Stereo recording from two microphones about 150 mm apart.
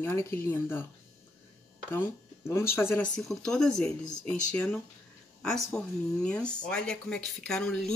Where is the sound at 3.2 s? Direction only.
5° left (ahead or behind).